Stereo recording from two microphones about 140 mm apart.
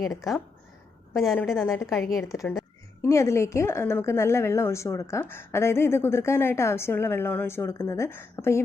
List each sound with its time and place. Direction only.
0.0 s a woman's voice: centre (ahead or behind)
1.6 s a woman's voice: 20° left (ahead or behind)
1.9 s speech: centre (ahead or behind)
2.3 s a woman's voice: 25° left (ahead or behind)